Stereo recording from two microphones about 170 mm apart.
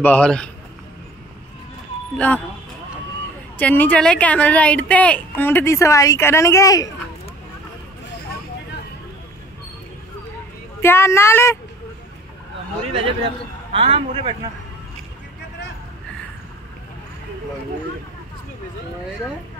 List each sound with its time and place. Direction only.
0.0 s a man's voice: 5° left (ahead or behind)
2.1 s a woman's voice: 10° left (ahead or behind)
3.5 s a woman's voice: 10° left (ahead or behind)
10.8 s a woman's voice: 15° left (ahead or behind)
13.7 s a man's voice: 35° right (ahead or behind)